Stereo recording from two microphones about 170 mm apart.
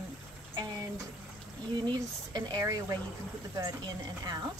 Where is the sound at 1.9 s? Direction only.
25° right (ahead or behind).